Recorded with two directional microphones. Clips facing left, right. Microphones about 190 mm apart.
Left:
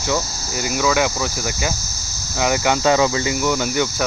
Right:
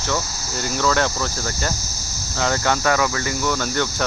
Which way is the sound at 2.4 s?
15° left (ahead or behind).